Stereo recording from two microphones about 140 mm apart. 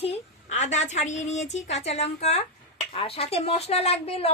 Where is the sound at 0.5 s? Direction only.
55° left (ahead or behind).